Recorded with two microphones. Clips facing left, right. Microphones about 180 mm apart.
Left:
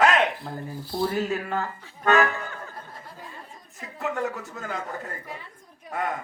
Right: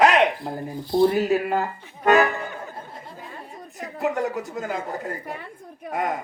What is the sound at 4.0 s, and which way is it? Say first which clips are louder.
Speech: right 4 dB; 35° right (ahead or behind).